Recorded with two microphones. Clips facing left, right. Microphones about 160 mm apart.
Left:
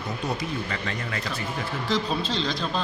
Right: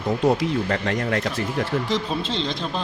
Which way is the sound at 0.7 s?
55° right (ahead or behind).